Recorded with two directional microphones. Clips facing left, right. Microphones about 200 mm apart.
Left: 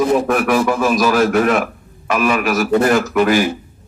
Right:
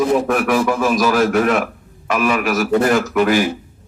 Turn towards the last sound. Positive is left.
turn(degrees=50)  # may be behind; listen again after turning